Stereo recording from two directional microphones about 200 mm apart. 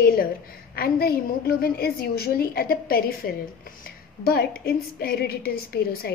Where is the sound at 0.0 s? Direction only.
50° left (ahead or behind).